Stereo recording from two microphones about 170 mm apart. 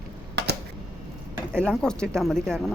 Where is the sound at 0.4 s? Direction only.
80° right.